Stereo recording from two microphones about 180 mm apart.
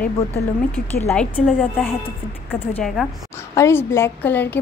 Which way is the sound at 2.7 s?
Centre (ahead or behind).